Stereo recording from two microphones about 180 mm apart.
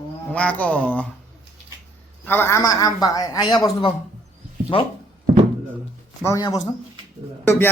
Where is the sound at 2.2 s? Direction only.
10° left (ahead or behind); by 3.9 s 25° left (ahead or behind).